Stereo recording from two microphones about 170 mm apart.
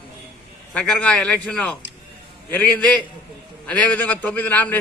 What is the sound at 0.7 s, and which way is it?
A man's voice, 5° left (ahead or behind).